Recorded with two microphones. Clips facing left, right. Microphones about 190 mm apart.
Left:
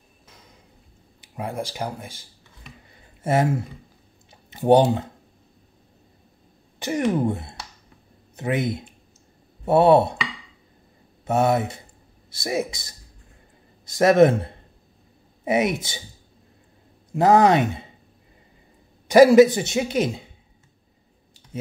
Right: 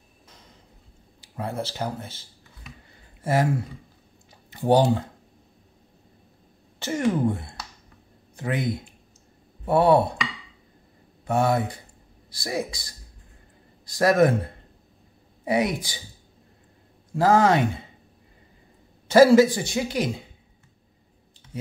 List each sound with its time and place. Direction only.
1.2 s speech: 15° left (ahead or behind)
3.3 s speech: 25° left (ahead or behind)
6.8 s speech: 20° left (ahead or behind)
11.2 s speech: 20° left (ahead or behind)
17.1 s speech: 20° left (ahead or behind)
19.0 s speech: 15° left (ahead or behind)